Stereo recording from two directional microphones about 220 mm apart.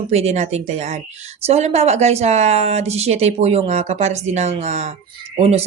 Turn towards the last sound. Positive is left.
turn(degrees=-30)  # may be behind; listen again after turning